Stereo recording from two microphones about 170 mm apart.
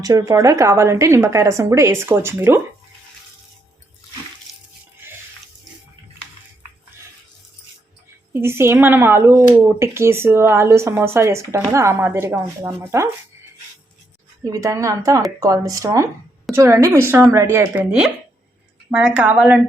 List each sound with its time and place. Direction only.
0.0 s speech: 20° right (ahead or behind)
8.3 s speech: 15° right (ahead or behind)
14.4 s a woman's voice: 20° right (ahead or behind)